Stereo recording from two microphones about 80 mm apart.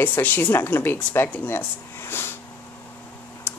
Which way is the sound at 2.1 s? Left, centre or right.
Left.